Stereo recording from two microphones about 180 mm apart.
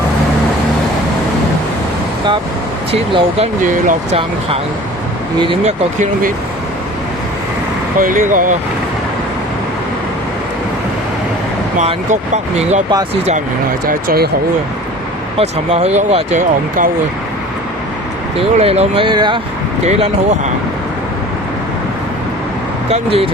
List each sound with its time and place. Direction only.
2.9 s speech: 30° right (ahead or behind); by 4.2 s 45° right (ahead or behind)
4.2 s speech: 30° right (ahead or behind)
7.9 s speech: 50° right (ahead or behind)
11.8 s speech: 40° right (ahead or behind)
13.8 s speech: 55° right (ahead or behind)
15.4 s speech: 35° right (ahead or behind)
18.3 s speech: 35° right (ahead or behind)
19.8 s speech: 40° right (ahead or behind)
22.9 s speech: 30° right (ahead or behind)